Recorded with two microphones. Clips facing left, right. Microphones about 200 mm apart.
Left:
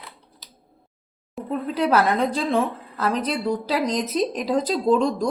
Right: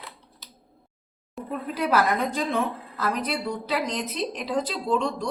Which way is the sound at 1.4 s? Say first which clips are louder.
Left 4 dB; centre (ahead or behind).